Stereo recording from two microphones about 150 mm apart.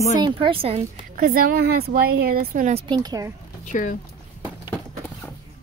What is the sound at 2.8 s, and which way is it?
Speech, 30° right (ahead or behind).